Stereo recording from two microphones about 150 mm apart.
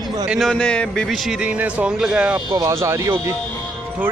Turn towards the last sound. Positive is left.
turn(degrees=-20)  # may be behind; listen again after turning